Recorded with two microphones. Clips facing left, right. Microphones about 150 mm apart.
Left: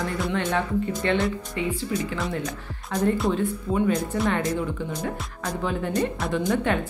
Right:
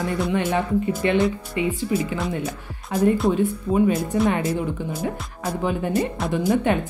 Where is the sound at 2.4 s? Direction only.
5° right (ahead or behind).